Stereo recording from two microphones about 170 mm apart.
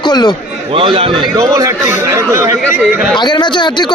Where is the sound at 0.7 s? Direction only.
30° right (ahead or behind).